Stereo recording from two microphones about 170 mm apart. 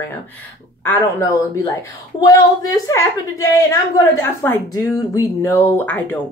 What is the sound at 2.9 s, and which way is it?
A woman's voice, 20° left (ahead or behind).